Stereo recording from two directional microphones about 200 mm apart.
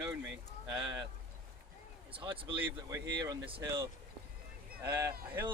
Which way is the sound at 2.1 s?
25° right (ahead or behind).